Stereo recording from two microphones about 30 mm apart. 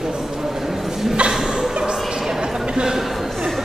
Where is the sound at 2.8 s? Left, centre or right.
Centre.